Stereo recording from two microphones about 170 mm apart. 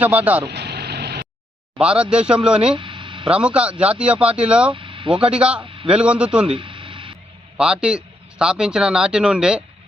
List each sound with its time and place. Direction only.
0.0 s speech: 10° right (ahead or behind)
0.4 s vehicle: 75° right (ahead or behind)
1.8 s a man's voice: 5° right (ahead or behind)
2.7 s a sound: 30° right (ahead or behind)
3.2 s speech: 5° right (ahead or behind)
4.7 s vehicle: 30° right (ahead or behind)
5.1 s speech: 5° right (ahead or behind)
5.6 s a sound: 30° right (ahead or behind)
5.9 s speech: 5° right (ahead or behind)
6.5 s a sound: 30° right (ahead or behind)
7.5 s a man's voice: 5° right (ahead or behind)